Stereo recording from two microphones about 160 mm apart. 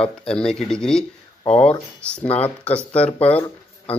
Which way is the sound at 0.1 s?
5° left (ahead or behind).